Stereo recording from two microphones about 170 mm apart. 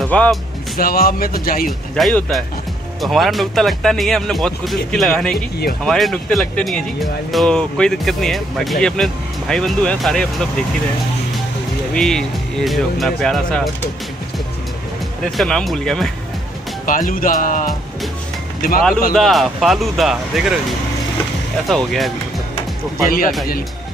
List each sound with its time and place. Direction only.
0.0 s speech: 5° left (ahead or behind)
0.7 s speech: 60° left (ahead or behind)
2.0 s speech: 5° left (ahead or behind)
11.9 s speech: 5° left (ahead or behind)
15.3 s speech: centre (ahead or behind)
16.8 s speech: 55° left (ahead or behind)
19.1 s speech: centre (ahead or behind)
21.6 s speech: centre (ahead or behind)
23.0 s speech: 55° left (ahead or behind)